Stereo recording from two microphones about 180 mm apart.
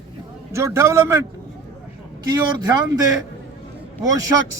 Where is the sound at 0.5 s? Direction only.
15° right (ahead or behind).